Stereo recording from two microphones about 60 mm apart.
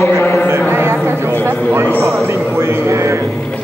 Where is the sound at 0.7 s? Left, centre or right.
Right.